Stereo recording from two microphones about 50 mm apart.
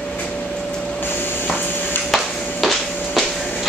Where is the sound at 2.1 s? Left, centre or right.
Centre.